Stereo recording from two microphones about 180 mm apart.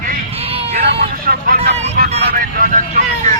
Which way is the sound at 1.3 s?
55° right (ahead or behind).